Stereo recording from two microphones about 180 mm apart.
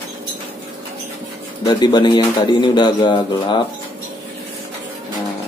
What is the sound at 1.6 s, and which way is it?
Speech, 25° left (ahead or behind).